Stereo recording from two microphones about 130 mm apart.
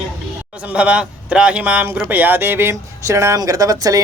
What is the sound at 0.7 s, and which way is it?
A man's voice, 10° right (ahead or behind).